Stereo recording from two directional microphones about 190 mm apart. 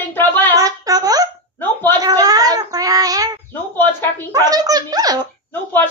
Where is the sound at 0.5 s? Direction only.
20° right (ahead or behind).